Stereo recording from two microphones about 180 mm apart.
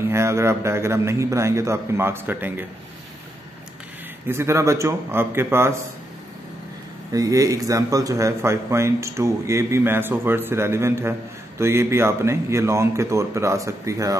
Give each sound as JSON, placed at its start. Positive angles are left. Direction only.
{"t": 0.1, "sound": "speech", "side_deg": -15}
{"t": 4.3, "sound": "speech", "side_deg": -15}
{"t": 7.1, "sound": "speech", "side_deg": -20}